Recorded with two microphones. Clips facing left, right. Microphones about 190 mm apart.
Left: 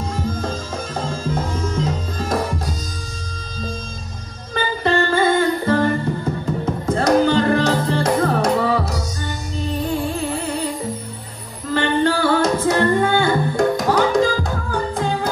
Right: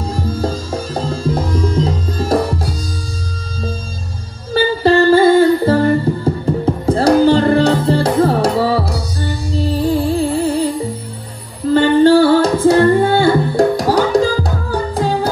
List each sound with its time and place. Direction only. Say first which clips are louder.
0.0 s music: right 4 dB; 35° right (ahead or behind)
4.6 s music: right 7 dB; 30° right (ahead or behind)